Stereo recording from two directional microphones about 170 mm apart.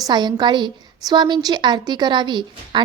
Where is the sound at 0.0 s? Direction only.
25° right (ahead or behind).